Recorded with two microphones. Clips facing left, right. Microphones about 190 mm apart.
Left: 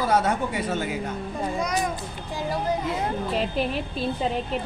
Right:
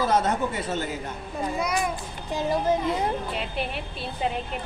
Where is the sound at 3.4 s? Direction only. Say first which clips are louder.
Left 5 dB; 35° left (ahead or behind).